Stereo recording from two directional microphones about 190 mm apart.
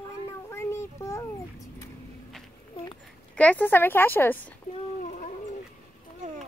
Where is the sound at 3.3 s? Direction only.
10° left (ahead or behind).